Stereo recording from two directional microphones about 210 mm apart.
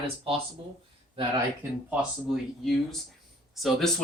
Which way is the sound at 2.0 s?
5° right (ahead or behind).